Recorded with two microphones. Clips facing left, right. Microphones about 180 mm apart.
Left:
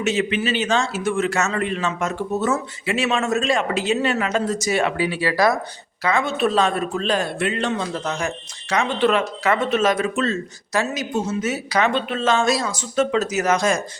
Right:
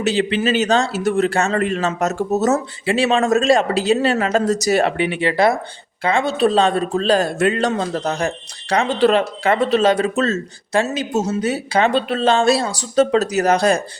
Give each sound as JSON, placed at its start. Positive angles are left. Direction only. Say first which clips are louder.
{"t": 0.0, "sound": "speech", "louder": "right 3 dB", "side_deg": -35}
{"t": 4.9, "sound": "speech", "louder": "right 3 dB", "side_deg": -25}
{"t": 10.7, "sound": "speech", "louder": "right 4 dB", "side_deg": -30}
{"t": 11.1, "sound": "speech", "louder": "right 3 dB", "side_deg": -40}